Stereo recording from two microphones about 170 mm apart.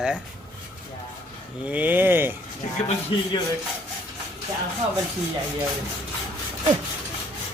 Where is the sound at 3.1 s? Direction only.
30° left (ahead or behind).